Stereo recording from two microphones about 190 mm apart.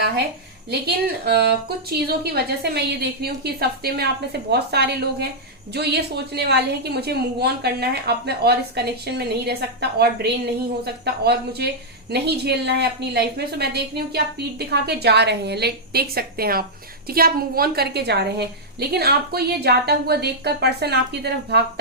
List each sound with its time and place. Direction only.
0.7 s a woman's voice: 55° right (ahead or behind)